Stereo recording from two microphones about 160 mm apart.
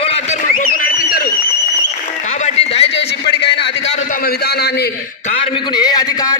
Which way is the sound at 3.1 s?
90° left.